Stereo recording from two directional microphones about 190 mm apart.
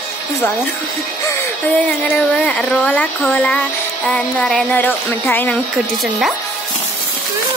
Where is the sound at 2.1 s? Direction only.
5° left (ahead or behind).